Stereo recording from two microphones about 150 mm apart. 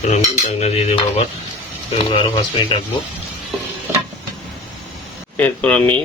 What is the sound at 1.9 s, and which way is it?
Speech, 35° left (ahead or behind).